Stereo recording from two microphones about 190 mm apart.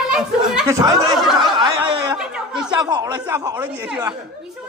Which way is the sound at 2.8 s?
20° right (ahead or behind).